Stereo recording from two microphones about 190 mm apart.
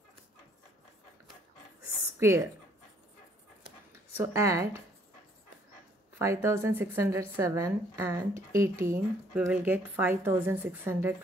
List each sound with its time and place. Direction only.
2.1 s speech: 15° right (ahead or behind)
4.2 s speech: 15° right (ahead or behind)
6.1 s speech: 15° right (ahead or behind)